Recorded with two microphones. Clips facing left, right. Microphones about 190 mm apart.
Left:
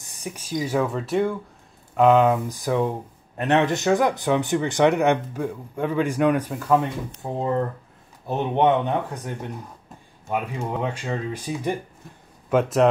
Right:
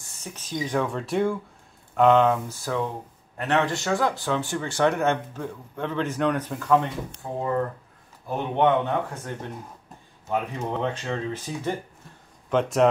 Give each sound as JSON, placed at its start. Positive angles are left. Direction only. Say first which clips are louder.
{"t": 0.0, "sound": "speech", "louder": "left 5 dB", "side_deg": 15}
{"t": 7.2, "sound": "speech", "louder": "left 2 dB", "side_deg": 20}